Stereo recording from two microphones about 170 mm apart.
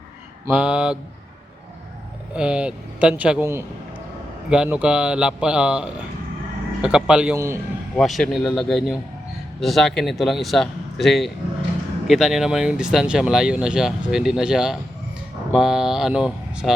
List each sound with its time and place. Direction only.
0.4 s speech: 5° right (ahead or behind)
2.3 s speech: 5° right (ahead or behind)
7.3 s speech: 15° right (ahead or behind)
7.9 s speech: centre (ahead or behind)